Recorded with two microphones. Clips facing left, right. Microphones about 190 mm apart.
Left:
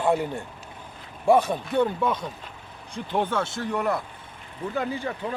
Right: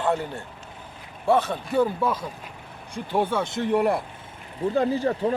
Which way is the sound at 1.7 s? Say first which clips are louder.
Right 1 dB; 5° right (ahead or behind).